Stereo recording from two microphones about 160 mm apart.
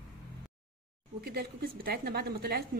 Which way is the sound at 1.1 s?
70° right (ahead or behind).